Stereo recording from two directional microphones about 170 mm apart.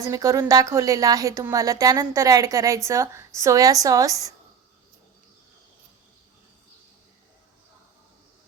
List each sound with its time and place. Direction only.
0.0 s speech: 20° right (ahead or behind)